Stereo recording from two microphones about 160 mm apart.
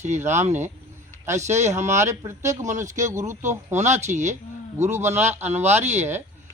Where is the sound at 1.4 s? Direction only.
45° right (ahead or behind).